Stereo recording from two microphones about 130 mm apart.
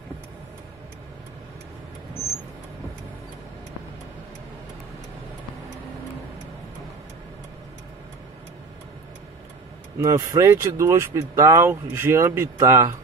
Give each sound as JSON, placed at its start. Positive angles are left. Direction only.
{"t": 9.9, "sound": "speech", "side_deg": -25}